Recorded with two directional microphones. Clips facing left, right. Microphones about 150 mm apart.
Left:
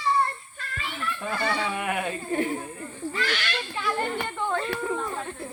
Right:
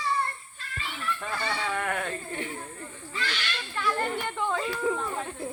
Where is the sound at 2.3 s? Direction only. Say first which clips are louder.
Left 9 dB; 45° left (ahead or behind).